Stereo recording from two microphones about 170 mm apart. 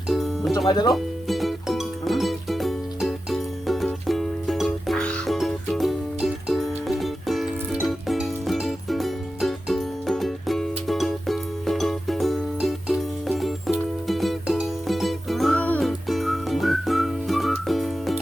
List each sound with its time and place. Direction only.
0.1 s music: centre (ahead or behind)
0.7 s speech: 25° left (ahead or behind)
0.9 s music: centre (ahead or behind)
15.9 s whistling: centre (ahead or behind)